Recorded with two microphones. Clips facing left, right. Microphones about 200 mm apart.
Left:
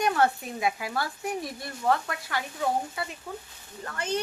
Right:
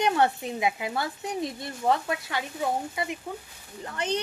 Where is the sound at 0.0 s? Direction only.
20° right (ahead or behind).